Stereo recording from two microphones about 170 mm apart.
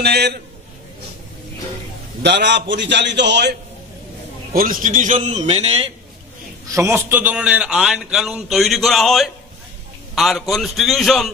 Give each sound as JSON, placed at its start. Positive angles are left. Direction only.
{"t": 0.0, "sound": "a man's voice", "side_deg": -70}
{"t": 2.2, "sound": "a man's voice", "side_deg": -90}
{"t": 4.6, "sound": "a man's voice", "side_deg": -55}
{"t": 6.7, "sound": "a man's voice", "side_deg": -15}